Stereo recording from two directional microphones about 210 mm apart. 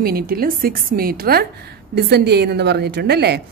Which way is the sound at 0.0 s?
45° right (ahead or behind).